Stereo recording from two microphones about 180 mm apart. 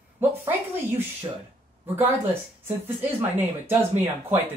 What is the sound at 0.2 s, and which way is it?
Speech, 10° right (ahead or behind).